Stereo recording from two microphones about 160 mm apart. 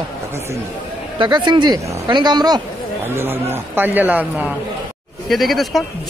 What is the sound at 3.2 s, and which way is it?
A man's voice, 15° right (ahead or behind).